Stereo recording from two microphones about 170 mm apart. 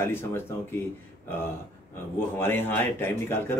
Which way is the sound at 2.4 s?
10° left (ahead or behind).